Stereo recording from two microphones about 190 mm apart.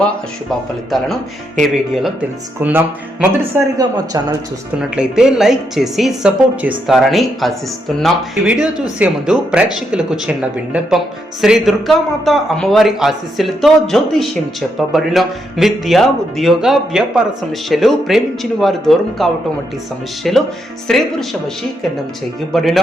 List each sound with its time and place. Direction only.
0.9 s a woman's voice: centre (ahead or behind); by 4.4 s 20° right (ahead or behind)
4.8 s a woman's voice: 5° right (ahead or behind)
22.5 s a woman's voice: centre (ahead or behind)